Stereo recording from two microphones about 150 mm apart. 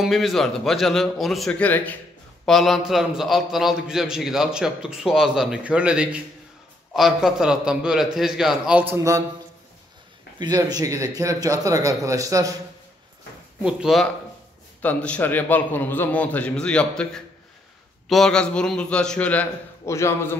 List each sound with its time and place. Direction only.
0.0 s a man's voice: centre (ahead or behind); by 9.2 s 20° right (ahead or behind)
10.4 s speech: 25° right (ahead or behind)
13.6 s a man's voice: 5° right (ahead or behind)
14.8 s a man's voice: 10° left (ahead or behind)